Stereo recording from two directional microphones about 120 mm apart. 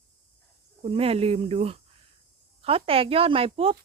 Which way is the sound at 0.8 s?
55° right (ahead or behind).